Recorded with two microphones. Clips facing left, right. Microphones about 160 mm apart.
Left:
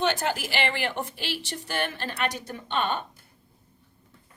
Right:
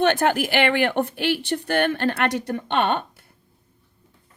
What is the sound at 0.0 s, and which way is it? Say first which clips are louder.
Speech: right 7 dB; 55° right (ahead or behind).